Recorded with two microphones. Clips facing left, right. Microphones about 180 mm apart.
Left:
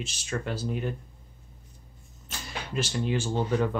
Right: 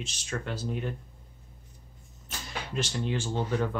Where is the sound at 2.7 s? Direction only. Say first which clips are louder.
Left 3 dB; 5° left (ahead or behind).